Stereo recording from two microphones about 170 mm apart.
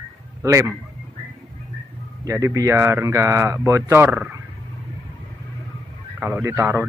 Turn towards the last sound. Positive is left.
turn(degrees=-15)  # may be behind; listen again after turning